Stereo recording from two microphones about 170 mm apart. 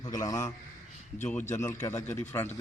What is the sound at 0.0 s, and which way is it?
A man's voice, 20° left (ahead or behind).